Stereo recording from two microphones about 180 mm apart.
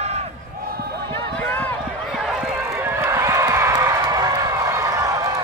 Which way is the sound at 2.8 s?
10° right (ahead or behind).